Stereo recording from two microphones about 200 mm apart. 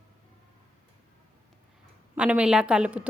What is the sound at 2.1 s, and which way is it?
Speech, 5° right (ahead or behind).